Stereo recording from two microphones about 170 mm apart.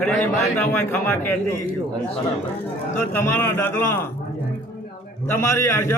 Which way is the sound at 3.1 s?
15° left (ahead or behind).